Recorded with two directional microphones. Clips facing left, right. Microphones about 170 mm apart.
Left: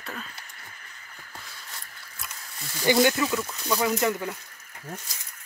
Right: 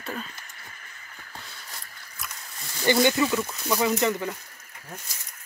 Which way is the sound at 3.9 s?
10° left (ahead or behind).